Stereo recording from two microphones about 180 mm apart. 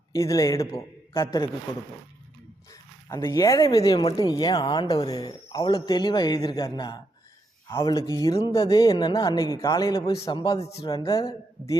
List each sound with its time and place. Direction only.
0.2 s speech: 15° left (ahead or behind)
3.1 s speech: 15° left (ahead or behind)
10.6 s speech: 35° left (ahead or behind)
10.9 s speech: 25° left (ahead or behind)